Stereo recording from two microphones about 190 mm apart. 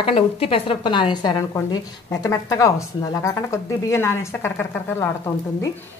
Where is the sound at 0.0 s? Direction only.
30° left (ahead or behind).